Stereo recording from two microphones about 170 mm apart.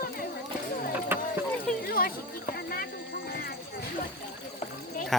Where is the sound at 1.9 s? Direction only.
60° left (ahead or behind).